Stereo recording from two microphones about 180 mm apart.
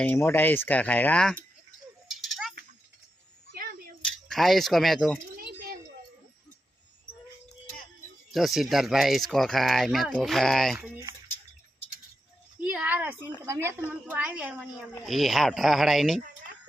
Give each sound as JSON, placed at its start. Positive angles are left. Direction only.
{"t": 0.0, "sound": "speech", "side_deg": 10}
{"t": 2.0, "sound": "a sound", "side_deg": 0}
{"t": 4.3, "sound": "speech", "side_deg": 0}
{"t": 5.4, "sound": "a sound", "side_deg": -55}
{"t": 8.3, "sound": "speech", "side_deg": 0}
{"t": 10.8, "sound": "a woman's voice", "side_deg": -10}
{"t": 12.5, "sound": "a woman's voice", "side_deg": -5}